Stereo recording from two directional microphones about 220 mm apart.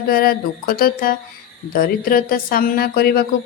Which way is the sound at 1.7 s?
40° left (ahead or behind).